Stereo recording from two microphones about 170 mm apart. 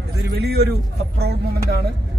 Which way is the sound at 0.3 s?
70° right (ahead or behind).